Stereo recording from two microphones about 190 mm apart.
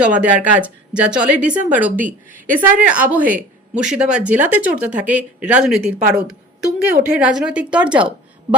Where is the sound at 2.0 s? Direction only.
45° right (ahead or behind).